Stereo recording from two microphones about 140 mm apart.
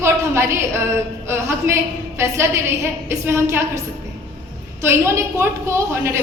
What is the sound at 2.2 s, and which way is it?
A woman's voice, 20° right (ahead or behind).